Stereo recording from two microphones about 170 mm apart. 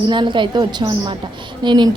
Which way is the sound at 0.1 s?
25° right (ahead or behind).